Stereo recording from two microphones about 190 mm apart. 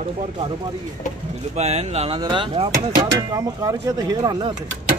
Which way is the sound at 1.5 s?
35° right (ahead or behind).